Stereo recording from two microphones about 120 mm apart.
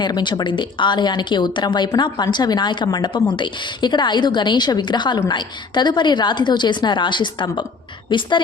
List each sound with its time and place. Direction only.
0.0 s a woman's voice: 40° left (ahead or behind)